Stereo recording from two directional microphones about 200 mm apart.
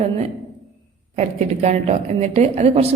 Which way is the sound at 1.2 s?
35° right (ahead or behind).